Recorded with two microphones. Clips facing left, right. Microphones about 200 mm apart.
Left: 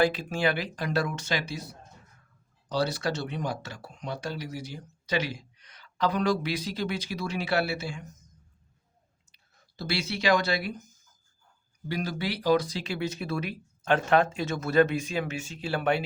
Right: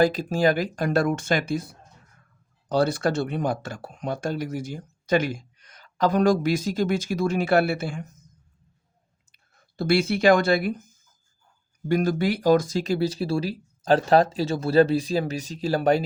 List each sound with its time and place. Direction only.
0.0 s speech: 40° right (ahead or behind)
9.3 s speech: 50° right (ahead or behind)
11.9 s speech: 50° right (ahead or behind)